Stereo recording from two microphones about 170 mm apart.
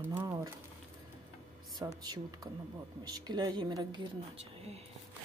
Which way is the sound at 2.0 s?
25° right (ahead or behind).